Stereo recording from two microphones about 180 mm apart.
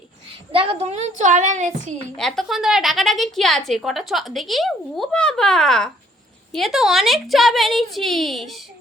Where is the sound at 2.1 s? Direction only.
Centre (ahead or behind).